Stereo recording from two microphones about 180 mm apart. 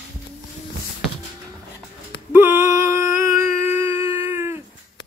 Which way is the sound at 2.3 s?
15° right (ahead or behind).